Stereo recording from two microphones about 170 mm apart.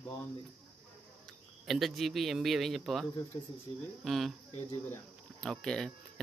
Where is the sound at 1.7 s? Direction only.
Centre (ahead or behind).